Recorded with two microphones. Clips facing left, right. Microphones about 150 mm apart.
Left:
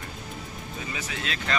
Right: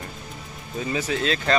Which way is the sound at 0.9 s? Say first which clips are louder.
Right 11 dB; 35° right (ahead or behind).